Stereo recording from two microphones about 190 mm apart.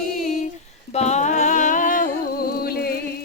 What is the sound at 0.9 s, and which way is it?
Humming, 35° left (ahead or behind).